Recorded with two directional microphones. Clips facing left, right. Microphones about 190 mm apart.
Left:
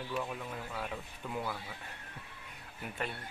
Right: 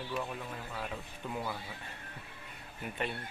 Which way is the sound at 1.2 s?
5° left (ahead or behind).